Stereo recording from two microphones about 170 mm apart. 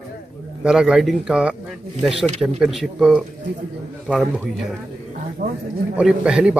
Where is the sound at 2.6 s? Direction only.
Centre (ahead or behind).